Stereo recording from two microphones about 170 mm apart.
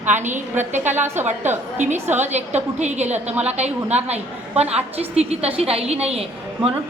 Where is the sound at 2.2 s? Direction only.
40° right (ahead or behind).